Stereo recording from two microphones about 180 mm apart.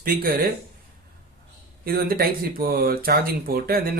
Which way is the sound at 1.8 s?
55° right (ahead or behind).